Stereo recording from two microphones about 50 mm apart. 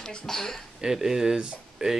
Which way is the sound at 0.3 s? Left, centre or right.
Centre.